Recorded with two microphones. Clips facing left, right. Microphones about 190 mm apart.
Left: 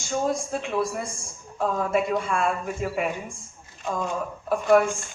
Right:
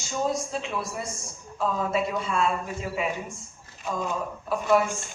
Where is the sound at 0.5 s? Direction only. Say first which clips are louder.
Left 5 dB; 50° left (ahead or behind).